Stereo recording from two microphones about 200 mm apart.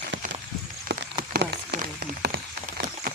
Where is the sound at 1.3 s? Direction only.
55° right (ahead or behind).